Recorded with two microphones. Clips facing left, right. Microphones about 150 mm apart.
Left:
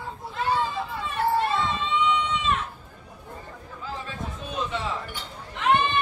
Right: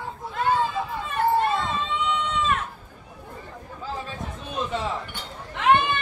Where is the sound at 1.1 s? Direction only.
50° right (ahead or behind).